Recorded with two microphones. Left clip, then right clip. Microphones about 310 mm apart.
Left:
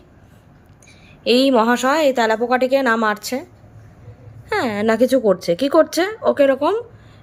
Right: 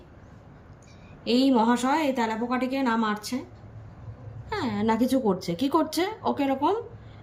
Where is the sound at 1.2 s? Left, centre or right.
Centre.